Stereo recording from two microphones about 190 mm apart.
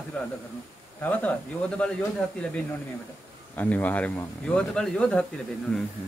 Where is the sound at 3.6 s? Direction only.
10° left (ahead or behind).